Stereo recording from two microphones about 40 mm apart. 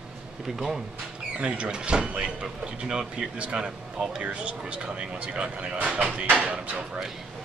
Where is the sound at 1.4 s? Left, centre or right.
Right.